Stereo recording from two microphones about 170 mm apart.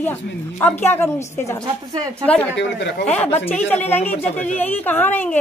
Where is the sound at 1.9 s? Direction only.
20° right (ahead or behind).